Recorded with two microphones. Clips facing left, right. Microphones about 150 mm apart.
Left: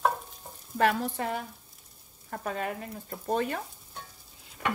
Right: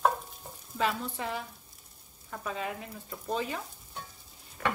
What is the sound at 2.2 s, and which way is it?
Frying, 50° left (ahead or behind).